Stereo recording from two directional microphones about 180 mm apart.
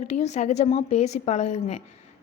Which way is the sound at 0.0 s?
40° left (ahead or behind).